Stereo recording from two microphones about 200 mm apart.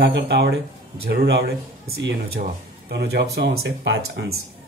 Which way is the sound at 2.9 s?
55° right (ahead or behind).